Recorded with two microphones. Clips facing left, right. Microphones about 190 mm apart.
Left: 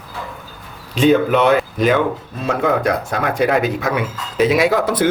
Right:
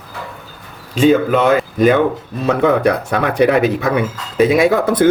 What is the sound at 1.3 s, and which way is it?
Speech, 45° right (ahead or behind).